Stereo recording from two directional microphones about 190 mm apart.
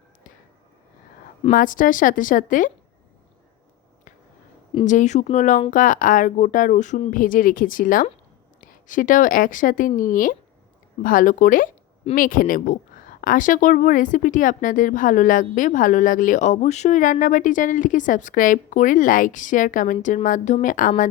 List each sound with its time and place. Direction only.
1.5 s speech: 45° left (ahead or behind)
4.9 s speech: 40° left (ahead or behind)